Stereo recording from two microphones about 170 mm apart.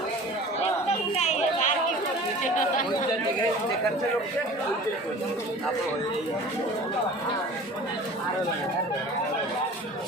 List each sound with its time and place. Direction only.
0.9 s chatter: 40° left (ahead or behind)